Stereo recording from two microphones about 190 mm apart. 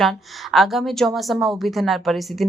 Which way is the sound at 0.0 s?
Centre (ahead or behind).